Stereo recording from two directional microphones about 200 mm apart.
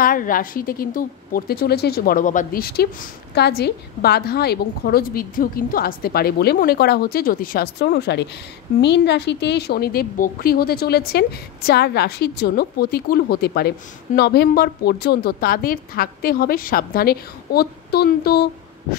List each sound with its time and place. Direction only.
0.0 s a woman's voice: 45° left (ahead or behind)